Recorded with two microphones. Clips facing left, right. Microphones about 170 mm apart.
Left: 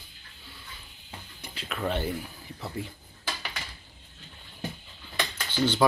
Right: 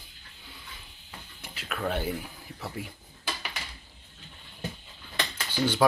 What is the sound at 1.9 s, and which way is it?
Speech, 10° right (ahead or behind).